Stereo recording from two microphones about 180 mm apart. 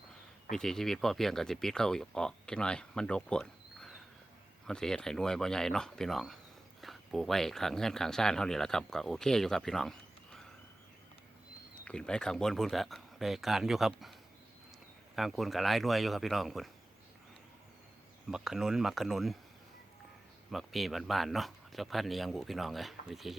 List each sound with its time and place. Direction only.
0.5 s speech: 5° left (ahead or behind)
11.9 s speech: 5° left (ahead or behind)
18.3 s speech: 5° right (ahead or behind)
20.5 s speech: centre (ahead or behind)